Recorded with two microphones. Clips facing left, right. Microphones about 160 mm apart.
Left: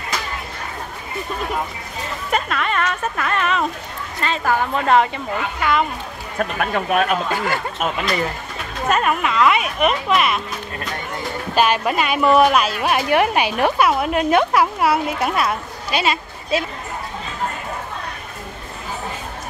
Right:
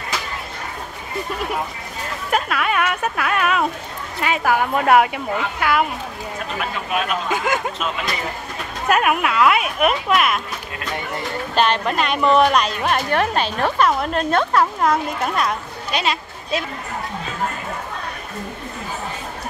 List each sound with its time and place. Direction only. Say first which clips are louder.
2.3 s speech: right 1 dB; 5° right (ahead or behind)
6.6 s speech: left 5 dB; 50° left (ahead or behind)
7.3 s speech: right 1 dB; 15° right (ahead or behind)
8.8 s speech: right 1 dB; 5° right (ahead or behind)